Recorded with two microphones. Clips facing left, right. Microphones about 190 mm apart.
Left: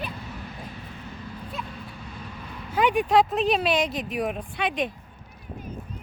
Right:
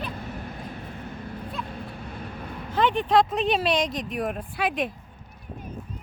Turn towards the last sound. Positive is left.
turn(degrees=-5)  # may be behind; listen again after turning